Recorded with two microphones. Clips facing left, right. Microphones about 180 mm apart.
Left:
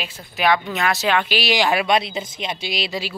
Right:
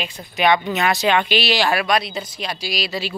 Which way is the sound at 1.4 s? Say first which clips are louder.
Even; 15° left (ahead or behind).